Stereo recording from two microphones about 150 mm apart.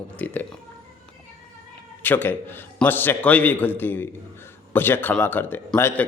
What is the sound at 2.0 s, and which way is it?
Speech, 15° left (ahead or behind).